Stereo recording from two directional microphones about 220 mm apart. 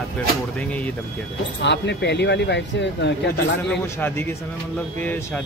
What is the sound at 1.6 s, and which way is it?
Speech, 50° left (ahead or behind).